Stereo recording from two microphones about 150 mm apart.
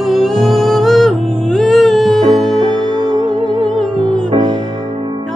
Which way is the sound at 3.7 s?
5° left (ahead or behind).